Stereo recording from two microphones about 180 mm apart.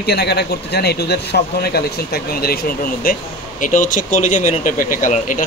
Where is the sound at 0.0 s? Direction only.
65° left (ahead or behind).